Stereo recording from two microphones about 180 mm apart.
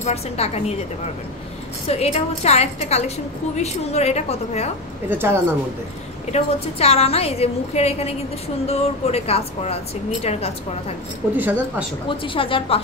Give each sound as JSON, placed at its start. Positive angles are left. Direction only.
{"t": 0.0, "sound": "a woman's voice", "side_deg": 35}
{"t": 1.9, "sound": "a woman's voice", "side_deg": 35}
{"t": 5.1, "sound": "speech", "side_deg": -15}
{"t": 6.3, "sound": "a woman's voice", "side_deg": 35}
{"t": 11.2, "sound": "speech", "side_deg": -10}
{"t": 12.1, "sound": "a woman's voice", "side_deg": 30}